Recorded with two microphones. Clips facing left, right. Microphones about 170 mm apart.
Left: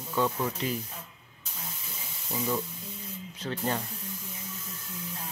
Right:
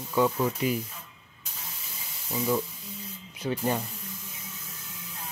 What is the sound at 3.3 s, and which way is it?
Speech, 10° right (ahead or behind).